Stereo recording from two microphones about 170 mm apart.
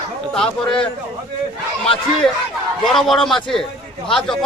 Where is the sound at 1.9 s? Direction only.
30° left (ahead or behind).